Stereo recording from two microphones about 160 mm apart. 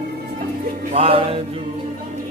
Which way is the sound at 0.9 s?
35° right (ahead or behind).